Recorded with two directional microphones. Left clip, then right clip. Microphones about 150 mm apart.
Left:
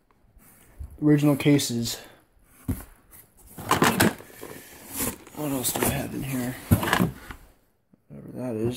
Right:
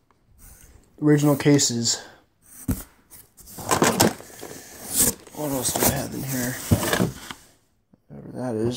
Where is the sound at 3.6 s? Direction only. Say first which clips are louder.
Right 2 dB; 35° left (ahead or behind).